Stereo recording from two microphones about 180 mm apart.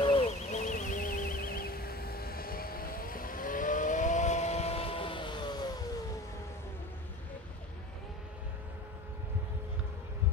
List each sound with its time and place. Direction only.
0.0 s vehicle: 30° left (ahead or behind)